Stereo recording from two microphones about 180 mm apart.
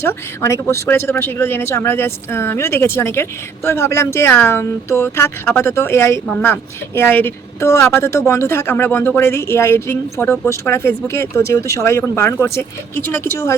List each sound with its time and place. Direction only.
0.0 s speech: 15° left (ahead or behind)